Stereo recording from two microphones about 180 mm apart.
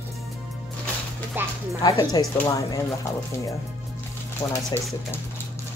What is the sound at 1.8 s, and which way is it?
Speech, 20° left (ahead or behind).